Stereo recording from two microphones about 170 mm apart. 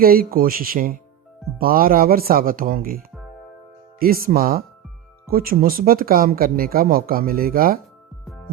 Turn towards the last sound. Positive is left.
turn(degrees=-60)  # may be behind; listen again after turning